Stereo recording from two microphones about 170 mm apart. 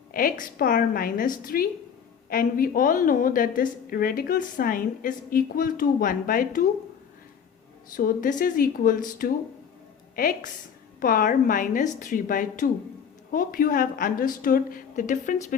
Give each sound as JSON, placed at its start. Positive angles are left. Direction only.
{"t": 0.1, "sound": "a woman's voice", "side_deg": 55}
{"t": 7.9, "sound": "a woman's voice", "side_deg": 55}